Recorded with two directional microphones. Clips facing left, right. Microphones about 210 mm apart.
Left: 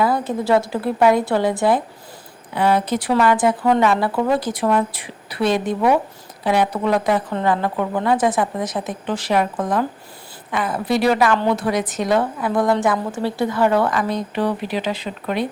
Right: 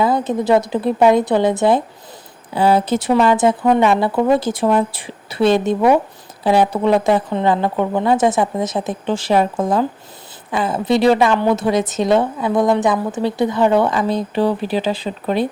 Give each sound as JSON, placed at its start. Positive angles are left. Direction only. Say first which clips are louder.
{"t": 0.0, "sound": "a woman's voice", "louder": "right 3 dB", "side_deg": -20}